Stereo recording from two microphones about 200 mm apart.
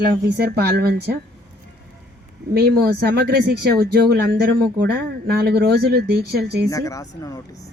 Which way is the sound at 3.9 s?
55° right (ahead or behind).